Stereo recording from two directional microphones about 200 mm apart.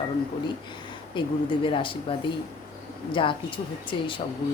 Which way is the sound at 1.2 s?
25° left (ahead or behind).